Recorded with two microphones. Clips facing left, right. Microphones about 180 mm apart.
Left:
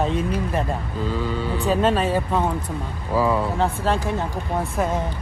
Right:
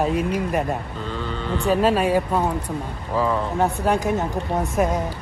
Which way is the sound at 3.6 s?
15° right (ahead or behind).